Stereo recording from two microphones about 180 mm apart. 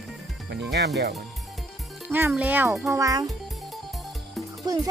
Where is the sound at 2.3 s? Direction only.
10° right (ahead or behind).